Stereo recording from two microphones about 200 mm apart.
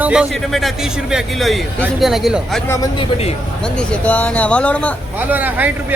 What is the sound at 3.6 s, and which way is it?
Speech, 5° left (ahead or behind).